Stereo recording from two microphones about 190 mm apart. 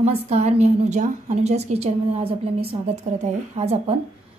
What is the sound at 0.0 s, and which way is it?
A woman's voice, 35° right (ahead or behind).